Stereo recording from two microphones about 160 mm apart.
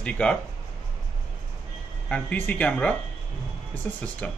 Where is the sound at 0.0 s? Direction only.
5° left (ahead or behind).